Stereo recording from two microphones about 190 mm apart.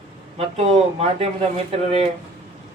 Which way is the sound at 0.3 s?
35° right (ahead or behind).